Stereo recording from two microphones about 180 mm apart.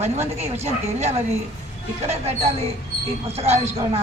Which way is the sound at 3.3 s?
35° right (ahead or behind).